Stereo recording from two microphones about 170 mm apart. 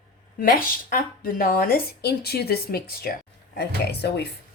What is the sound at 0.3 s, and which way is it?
A woman's voice, 60° left (ahead or behind).